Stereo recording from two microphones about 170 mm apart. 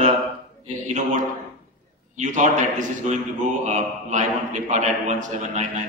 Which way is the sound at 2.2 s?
45° right (ahead or behind).